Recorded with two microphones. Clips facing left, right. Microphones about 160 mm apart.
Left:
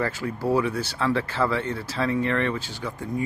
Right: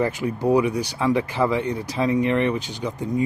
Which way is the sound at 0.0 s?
20° right (ahead or behind).